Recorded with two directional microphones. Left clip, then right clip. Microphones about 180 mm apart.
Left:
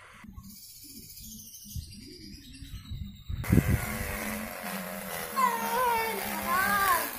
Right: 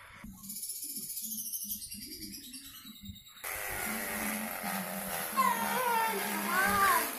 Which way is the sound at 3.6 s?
20° left (ahead or behind).